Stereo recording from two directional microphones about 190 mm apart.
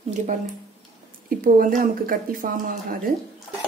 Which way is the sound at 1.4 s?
45° right (ahead or behind).